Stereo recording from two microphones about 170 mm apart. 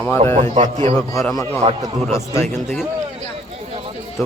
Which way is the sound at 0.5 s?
40° right (ahead or behind).